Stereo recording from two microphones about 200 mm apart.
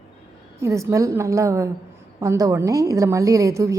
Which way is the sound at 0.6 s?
15° right (ahead or behind).